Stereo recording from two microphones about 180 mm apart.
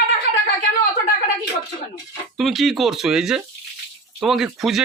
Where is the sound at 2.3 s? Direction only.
Centre (ahead or behind).